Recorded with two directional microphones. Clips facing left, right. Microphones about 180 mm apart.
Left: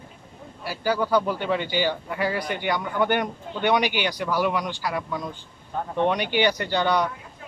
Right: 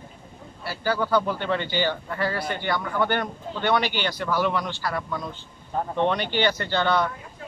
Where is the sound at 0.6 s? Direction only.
10° left (ahead or behind).